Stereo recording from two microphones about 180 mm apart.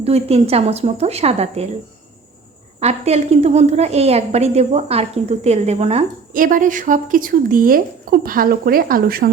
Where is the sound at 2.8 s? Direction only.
35° right (ahead or behind).